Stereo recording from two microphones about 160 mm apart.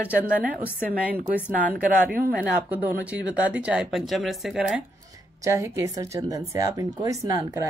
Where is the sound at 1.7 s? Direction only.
60° right (ahead or behind).